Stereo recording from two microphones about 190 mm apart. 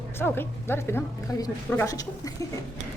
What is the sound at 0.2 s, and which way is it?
A woman's voice, 10° left (ahead or behind).